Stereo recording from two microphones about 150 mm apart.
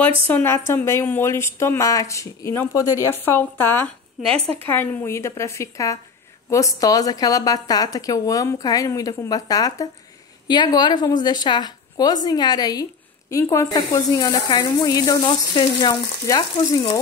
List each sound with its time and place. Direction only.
0.3 s a woman's voice: 15° left (ahead or behind)
4.4 s a woman's voice: 40° right (ahead or behind)
4.6 s a woman's voice: 15° left (ahead or behind); by 17.0 s 30° left (ahead or behind)